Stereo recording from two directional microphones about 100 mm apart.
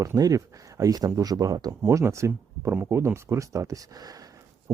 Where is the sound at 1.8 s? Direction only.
30° right (ahead or behind).